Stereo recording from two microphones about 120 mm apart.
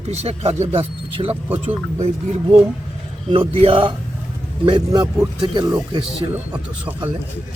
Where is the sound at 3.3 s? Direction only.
50° right (ahead or behind); by 6.4 s 30° right (ahead or behind).